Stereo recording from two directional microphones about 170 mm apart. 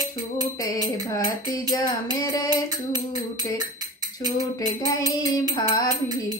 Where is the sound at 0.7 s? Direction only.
20° left (ahead or behind).